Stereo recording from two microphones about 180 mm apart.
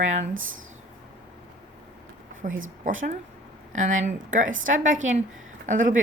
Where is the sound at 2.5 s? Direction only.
90° right.